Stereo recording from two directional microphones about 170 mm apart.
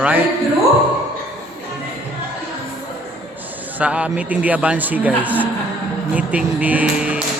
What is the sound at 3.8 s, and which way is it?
A man's voice, 5° right (ahead or behind).